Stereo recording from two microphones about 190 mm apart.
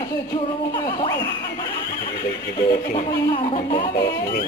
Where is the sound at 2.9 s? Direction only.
25° left (ahead or behind).